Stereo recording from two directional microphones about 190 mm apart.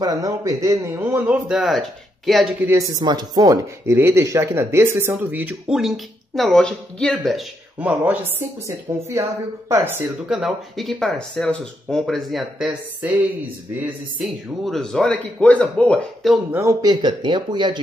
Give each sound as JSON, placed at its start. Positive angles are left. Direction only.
{"t": 0.0, "sound": "speech", "side_deg": -20}
{"t": 2.6, "sound": "a man's voice", "side_deg": -15}
{"t": 16.5, "sound": "speech", "side_deg": -15}